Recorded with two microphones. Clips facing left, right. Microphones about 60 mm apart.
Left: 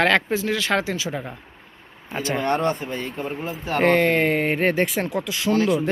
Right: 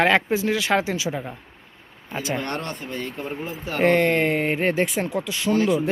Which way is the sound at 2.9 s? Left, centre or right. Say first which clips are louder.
Left 2 dB; centre.